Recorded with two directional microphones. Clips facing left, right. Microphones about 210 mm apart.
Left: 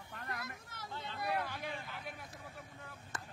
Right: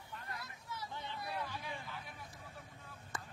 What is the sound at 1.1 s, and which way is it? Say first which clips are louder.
Vehicle: left 7 dB; 75° left (ahead or behind).